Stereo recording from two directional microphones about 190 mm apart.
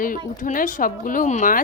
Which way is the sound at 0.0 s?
45° left (ahead or behind).